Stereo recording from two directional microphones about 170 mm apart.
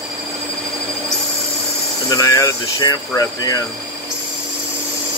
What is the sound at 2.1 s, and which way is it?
Speech, 20° left (ahead or behind).